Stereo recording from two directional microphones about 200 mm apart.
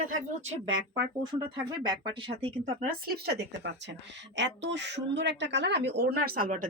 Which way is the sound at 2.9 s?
50° right (ahead or behind).